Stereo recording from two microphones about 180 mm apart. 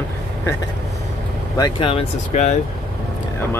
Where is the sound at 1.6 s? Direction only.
25° left (ahead or behind).